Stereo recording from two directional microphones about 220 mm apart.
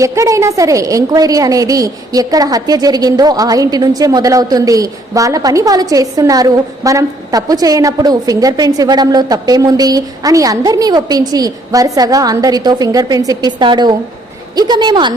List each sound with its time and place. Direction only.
0.0 s a woman's voice: 15° right (ahead or behind)